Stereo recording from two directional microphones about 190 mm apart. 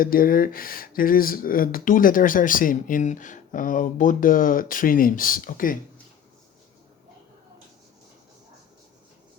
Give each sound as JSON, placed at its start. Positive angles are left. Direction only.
{"t": 0.0, "sound": "speech", "side_deg": 50}